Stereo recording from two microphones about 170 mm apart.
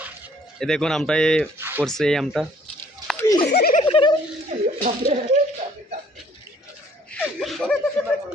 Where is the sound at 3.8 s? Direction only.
30° left (ahead or behind).